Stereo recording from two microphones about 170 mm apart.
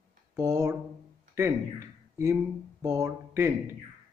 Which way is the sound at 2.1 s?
15° right (ahead or behind).